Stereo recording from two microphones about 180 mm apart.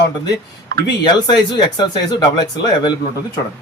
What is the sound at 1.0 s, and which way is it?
Speech, 25° left (ahead or behind).